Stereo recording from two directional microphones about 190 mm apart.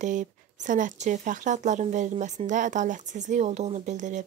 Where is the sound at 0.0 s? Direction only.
40° right (ahead or behind).